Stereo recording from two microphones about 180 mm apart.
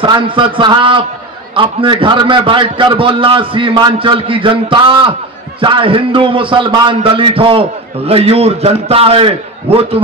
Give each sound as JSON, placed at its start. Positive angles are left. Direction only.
{"t": 0.0, "sound": "a man's voice", "side_deg": -25}